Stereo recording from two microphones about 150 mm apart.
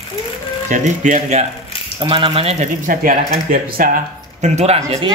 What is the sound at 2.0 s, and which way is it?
Speech, 35° right (ahead or behind).